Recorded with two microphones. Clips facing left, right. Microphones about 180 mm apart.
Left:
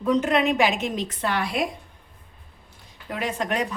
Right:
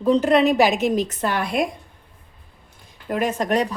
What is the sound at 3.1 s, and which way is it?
Speech, 45° right (ahead or behind).